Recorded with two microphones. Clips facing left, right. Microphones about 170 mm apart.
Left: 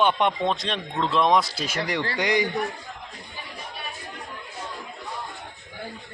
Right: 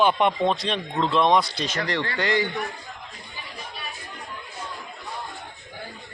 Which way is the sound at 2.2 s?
15° left (ahead or behind).